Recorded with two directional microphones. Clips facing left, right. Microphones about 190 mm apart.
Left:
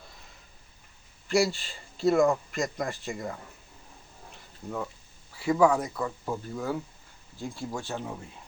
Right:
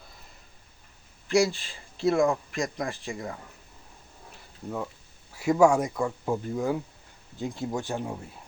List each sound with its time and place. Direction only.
1.3 s speech: centre (ahead or behind)
5.4 s speech: 10° right (ahead or behind)